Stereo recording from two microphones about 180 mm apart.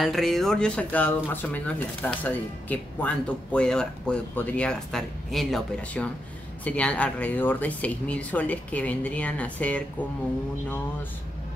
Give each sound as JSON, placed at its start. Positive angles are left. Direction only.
{"t": 0.0, "sound": "speech", "side_deg": 0}